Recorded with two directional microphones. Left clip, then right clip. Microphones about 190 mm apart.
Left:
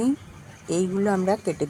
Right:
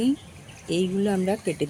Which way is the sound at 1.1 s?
10° right (ahead or behind).